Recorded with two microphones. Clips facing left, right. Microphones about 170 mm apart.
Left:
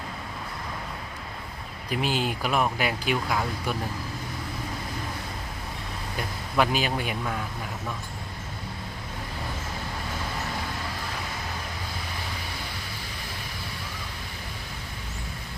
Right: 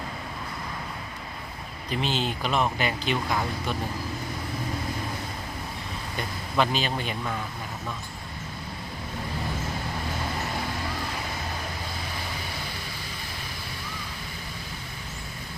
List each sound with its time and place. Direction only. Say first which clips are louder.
1.9 s speech: left 1 dB; 10° left (ahead or behind)
6.1 s speech: left 1 dB; 10° left (ahead or behind)